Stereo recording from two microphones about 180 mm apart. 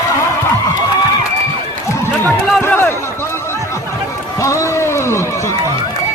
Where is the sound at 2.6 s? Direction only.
10° left (ahead or behind).